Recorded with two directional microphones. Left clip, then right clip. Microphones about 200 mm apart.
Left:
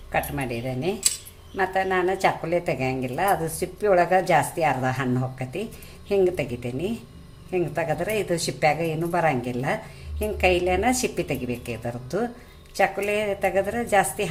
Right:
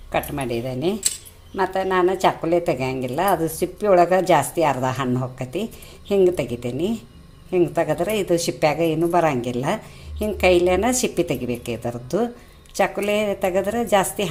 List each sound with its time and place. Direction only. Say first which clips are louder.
0.1 s a woman's voice: right 3 dB; 30° right (ahead or behind)